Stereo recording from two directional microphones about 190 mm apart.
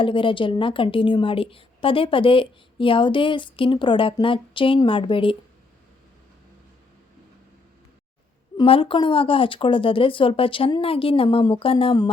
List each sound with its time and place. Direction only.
0.0 s a woman's voice: 25° left (ahead or behind)
8.5 s a woman's voice: 30° left (ahead or behind)